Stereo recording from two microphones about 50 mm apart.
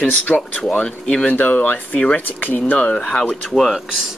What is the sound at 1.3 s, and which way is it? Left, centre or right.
Speech, left.